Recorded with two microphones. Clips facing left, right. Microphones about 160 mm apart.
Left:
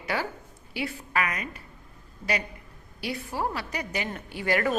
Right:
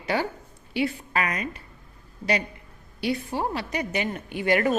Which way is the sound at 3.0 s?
25° right (ahead or behind).